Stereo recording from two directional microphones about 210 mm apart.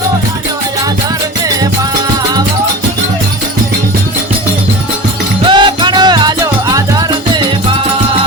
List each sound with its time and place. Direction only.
5.5 s music: 20° right (ahead or behind)